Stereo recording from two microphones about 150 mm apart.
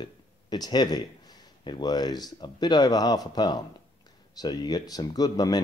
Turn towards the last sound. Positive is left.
turn(degrees=25)  # may be behind; listen again after turning